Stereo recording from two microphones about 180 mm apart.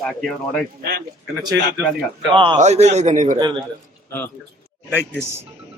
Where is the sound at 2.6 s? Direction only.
40° right (ahead or behind).